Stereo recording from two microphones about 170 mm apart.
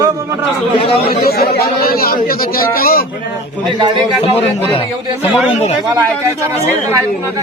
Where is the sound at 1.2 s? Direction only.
65° left (ahead or behind).